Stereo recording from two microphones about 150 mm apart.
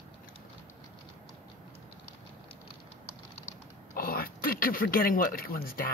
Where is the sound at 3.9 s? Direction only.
75° left (ahead or behind).